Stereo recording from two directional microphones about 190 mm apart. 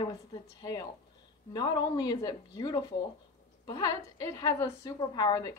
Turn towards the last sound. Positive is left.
turn(degrees=20)  # may be behind; listen again after turning